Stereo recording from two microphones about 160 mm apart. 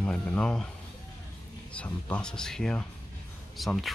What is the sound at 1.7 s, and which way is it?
Speech, 5° left (ahead or behind).